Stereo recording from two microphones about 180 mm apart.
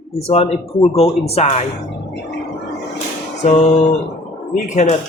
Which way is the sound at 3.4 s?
40° left (ahead or behind).